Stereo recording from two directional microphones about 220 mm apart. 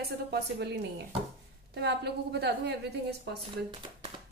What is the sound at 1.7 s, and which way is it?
A woman's voice, 50° right (ahead or behind).